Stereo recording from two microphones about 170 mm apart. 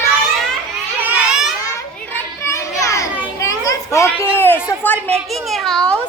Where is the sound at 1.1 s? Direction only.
5° right (ahead or behind).